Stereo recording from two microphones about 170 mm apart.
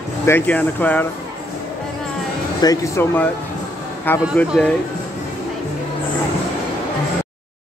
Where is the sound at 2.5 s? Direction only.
20° left (ahead or behind).